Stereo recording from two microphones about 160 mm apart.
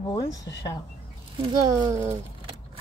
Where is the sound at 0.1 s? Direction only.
30° left (ahead or behind).